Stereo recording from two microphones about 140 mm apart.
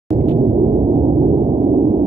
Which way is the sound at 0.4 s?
45° right (ahead or behind).